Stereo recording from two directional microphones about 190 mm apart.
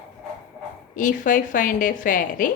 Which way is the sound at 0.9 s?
45° left (ahead or behind).